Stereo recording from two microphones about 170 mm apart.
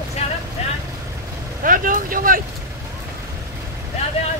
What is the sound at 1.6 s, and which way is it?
Speech, 55° right (ahead or behind).